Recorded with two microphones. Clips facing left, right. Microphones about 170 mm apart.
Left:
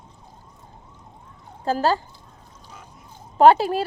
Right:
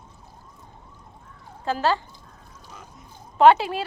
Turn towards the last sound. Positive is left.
turn(degrees=40)  # may be behind; listen again after turning